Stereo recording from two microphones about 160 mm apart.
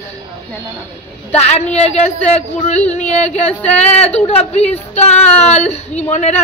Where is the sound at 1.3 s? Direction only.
40° left (ahead or behind).